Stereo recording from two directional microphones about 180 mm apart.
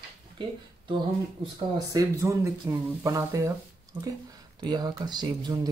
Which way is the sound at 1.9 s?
15° right (ahead or behind).